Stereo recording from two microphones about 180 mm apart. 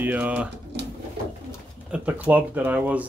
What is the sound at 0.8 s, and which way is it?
Bird, 70° right (ahead or behind).